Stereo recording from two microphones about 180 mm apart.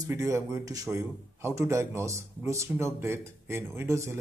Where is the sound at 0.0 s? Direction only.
15° right (ahead or behind).